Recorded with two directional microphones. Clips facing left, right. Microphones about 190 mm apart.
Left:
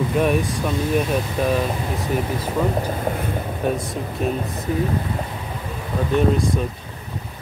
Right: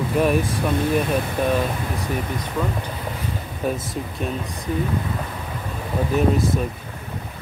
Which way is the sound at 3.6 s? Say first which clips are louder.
Left 1 dB; centre (ahead or behind).